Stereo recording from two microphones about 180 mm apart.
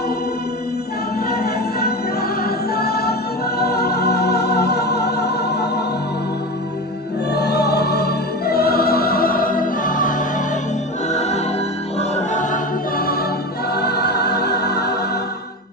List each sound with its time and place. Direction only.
2.4 s music: 60° left (ahead or behind)
7.3 s music: 65° left (ahead or behind); by 12.5 s 45° left (ahead or behind)
13.7 s music: 65° left (ahead or behind)